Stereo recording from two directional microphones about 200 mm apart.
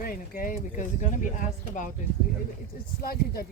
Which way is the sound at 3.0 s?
50° left (ahead or behind).